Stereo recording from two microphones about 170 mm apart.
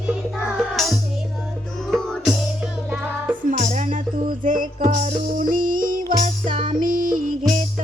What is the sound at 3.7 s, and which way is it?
Music, 45° right (ahead or behind).